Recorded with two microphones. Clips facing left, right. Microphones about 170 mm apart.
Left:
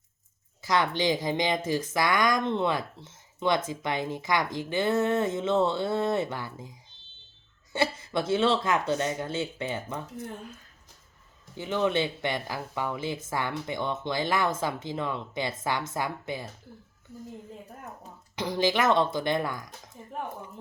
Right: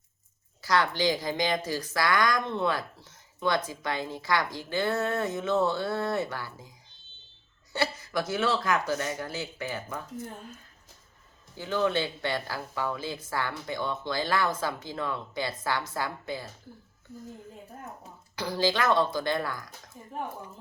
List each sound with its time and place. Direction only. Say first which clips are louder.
0.6 s speech: even; 20° left (ahead or behind)
7.7 s speech: left 2 dB; 25° left (ahead or behind)
11.5 s speech: left 1 dB; 20° left (ahead or behind)
18.3 s speech: left 1 dB; 20° left (ahead or behind)